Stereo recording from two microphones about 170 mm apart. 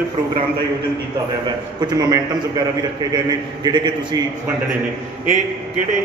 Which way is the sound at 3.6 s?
25° right (ahead or behind).